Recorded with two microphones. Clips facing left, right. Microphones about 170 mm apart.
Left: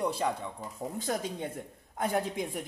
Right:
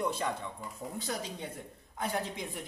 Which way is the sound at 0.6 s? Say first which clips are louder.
Left 3 dB; 45° left (ahead or behind).